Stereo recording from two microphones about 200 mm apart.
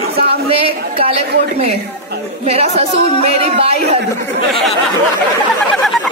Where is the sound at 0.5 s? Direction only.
30° right (ahead or behind).